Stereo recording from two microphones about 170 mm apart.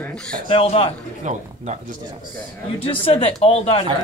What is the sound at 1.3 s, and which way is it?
Speech, 45° right (ahead or behind).